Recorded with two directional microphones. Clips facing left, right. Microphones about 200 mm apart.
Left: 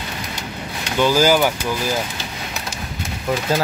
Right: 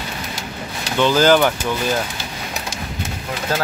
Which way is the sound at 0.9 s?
10° left (ahead or behind).